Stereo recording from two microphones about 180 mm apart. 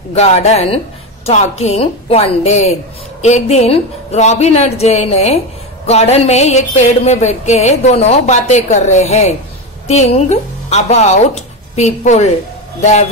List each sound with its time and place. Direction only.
0.1 s a woman's voice: 35° left (ahead or behind)